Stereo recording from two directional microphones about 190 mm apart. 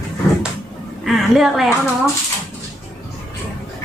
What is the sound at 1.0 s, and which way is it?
Speech, centre (ahead or behind).